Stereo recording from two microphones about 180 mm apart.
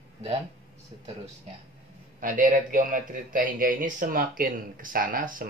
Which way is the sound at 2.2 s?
45° right (ahead or behind).